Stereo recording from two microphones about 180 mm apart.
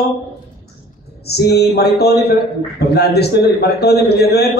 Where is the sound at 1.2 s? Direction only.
65° left (ahead or behind).